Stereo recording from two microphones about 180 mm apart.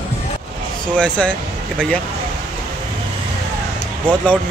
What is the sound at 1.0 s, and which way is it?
Speech, 5° left (ahead or behind).